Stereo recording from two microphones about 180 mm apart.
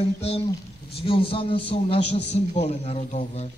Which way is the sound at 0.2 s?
35° left (ahead or behind).